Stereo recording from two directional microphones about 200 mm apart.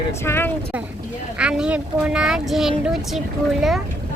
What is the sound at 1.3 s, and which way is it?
Speech, 5° right (ahead or behind).